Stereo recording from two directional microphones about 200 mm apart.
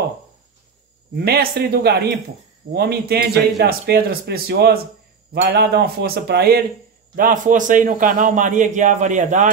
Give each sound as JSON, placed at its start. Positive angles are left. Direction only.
{"t": 1.1, "sound": "a man's voice", "side_deg": -50}
{"t": 7.2, "sound": "a man's voice", "side_deg": -40}